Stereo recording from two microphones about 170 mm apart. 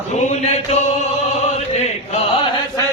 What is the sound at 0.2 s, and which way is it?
Chant, 40° left (ahead or behind).